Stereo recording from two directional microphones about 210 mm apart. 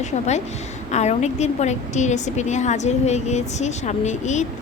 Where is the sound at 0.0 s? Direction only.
35° left (ahead or behind).